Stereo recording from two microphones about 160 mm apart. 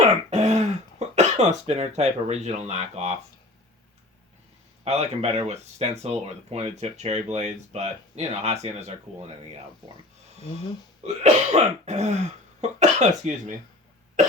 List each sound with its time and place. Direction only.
0.3 s speech: 45° right (ahead or behind)
4.8 s speech: 40° right (ahead or behind)
11.0 s speech: 45° right (ahead or behind)
14.2 s cough: 50° right (ahead or behind)